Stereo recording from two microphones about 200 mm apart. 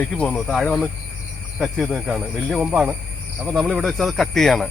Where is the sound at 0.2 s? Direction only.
5° left (ahead or behind).